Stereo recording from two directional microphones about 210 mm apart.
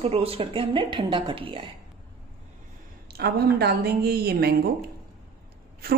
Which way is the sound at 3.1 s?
50° right (ahead or behind).